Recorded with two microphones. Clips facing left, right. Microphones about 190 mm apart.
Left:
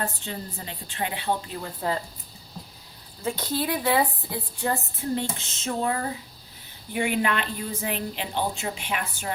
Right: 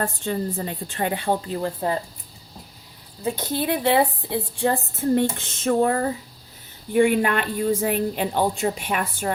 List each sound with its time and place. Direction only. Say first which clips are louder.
0.0 s a woman's voice: right 7 dB; 50° right (ahead or behind)
3.4 s a woman's voice: right 4 dB; 20° right (ahead or behind)
4.9 s a woman's voice: right 8 dB; 55° right (ahead or behind)